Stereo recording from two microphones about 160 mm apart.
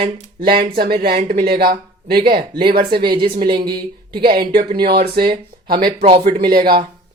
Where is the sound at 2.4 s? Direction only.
35° right (ahead or behind).